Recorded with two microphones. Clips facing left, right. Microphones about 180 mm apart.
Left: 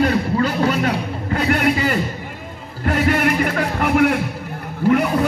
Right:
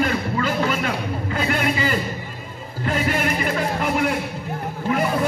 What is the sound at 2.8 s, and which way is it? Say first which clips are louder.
Music: left 5 dB; 60° left (ahead or behind).